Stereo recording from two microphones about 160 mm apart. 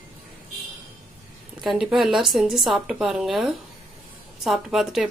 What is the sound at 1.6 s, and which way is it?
Speech, centre (ahead or behind).